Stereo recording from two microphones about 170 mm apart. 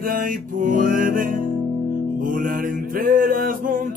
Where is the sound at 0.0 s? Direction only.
55° right (ahead or behind).